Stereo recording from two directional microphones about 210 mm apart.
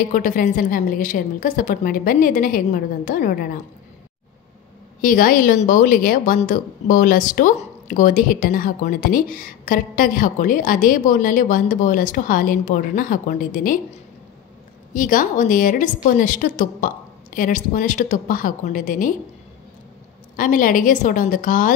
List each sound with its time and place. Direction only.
0.1 s a woman's voice: 40° left (ahead or behind)
5.0 s a woman's voice: 40° left (ahead or behind)
15.0 s a woman's voice: 40° left (ahead or behind)
20.3 s a woman's voice: 40° left (ahead or behind)